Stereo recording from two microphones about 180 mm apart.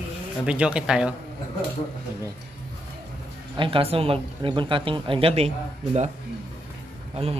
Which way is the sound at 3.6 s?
30° right (ahead or behind).